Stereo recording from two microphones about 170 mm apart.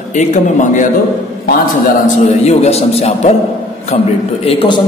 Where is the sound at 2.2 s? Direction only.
40° left (ahead or behind).